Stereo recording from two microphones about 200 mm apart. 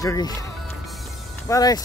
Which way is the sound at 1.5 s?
20° left (ahead or behind).